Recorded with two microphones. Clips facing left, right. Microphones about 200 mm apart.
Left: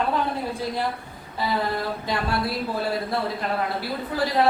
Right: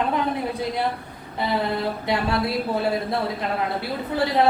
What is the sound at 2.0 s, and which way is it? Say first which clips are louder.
Speech: right 4 dB; 20° right (ahead or behind).